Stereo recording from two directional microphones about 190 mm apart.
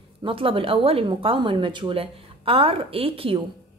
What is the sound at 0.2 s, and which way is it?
A woman's voice, 30° right (ahead or behind).